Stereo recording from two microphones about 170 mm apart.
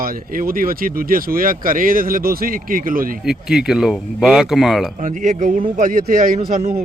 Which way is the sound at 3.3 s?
5° right (ahead or behind).